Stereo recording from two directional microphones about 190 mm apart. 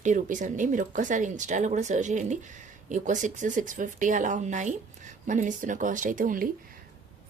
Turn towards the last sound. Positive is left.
turn(degrees=-45)  # may be behind; listen again after turning